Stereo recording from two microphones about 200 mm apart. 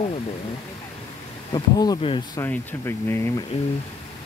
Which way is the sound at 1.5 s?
20° left (ahead or behind).